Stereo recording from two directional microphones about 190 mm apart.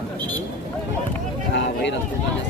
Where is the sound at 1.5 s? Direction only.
65° left (ahead or behind).